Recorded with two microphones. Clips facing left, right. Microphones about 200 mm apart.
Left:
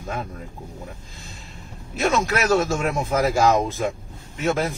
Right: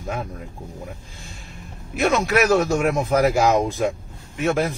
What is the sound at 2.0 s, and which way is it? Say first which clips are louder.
Speech: right 3 dB; 15° right (ahead or behind).